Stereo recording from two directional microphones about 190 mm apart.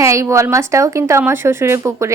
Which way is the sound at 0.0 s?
15° right (ahead or behind).